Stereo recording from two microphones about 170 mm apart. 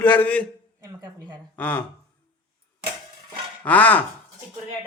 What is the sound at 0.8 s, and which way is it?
Speech, 25° right (ahead or behind).